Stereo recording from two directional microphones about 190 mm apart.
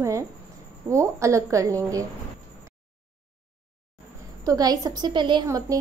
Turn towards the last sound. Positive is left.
turn(degrees=-20)  # may be behind; listen again after turning